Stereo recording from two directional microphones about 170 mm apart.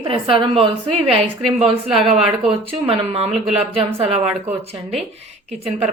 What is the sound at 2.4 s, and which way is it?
A woman's voice, 35° right (ahead or behind).